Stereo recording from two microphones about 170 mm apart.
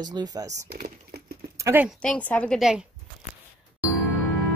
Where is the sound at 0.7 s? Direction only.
60° right (ahead or behind).